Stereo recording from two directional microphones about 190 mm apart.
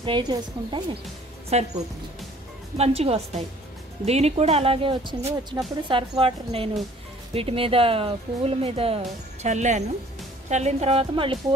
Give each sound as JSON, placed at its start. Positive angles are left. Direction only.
{"t": 0.0, "sound": "a woman's voice", "side_deg": -25}
{"t": 1.5, "sound": "speech", "side_deg": -35}
{"t": 2.8, "sound": "a woman's voice", "side_deg": -35}